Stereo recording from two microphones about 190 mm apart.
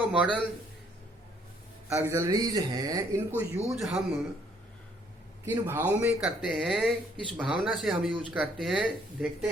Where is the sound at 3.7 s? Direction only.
Centre (ahead or behind).